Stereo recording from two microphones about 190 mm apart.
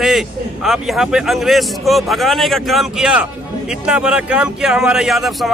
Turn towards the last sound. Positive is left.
turn(degrees=0)  # may be behind; listen again after turning